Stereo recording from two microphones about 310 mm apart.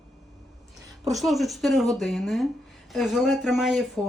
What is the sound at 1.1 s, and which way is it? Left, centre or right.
Speech, centre.